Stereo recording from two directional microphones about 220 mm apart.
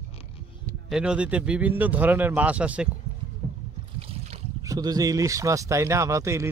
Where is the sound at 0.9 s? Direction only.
5° right (ahead or behind).